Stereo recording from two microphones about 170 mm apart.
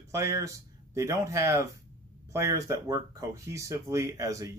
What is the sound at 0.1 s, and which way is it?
Speech, 20° right (ahead or behind).